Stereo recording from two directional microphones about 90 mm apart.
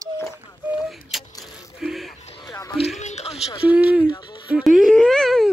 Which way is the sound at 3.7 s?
15° right (ahead or behind).